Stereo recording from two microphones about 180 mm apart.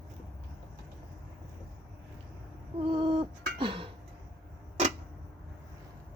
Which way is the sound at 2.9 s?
30° right (ahead or behind).